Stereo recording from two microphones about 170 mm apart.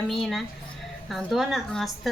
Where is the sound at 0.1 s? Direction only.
Centre (ahead or behind).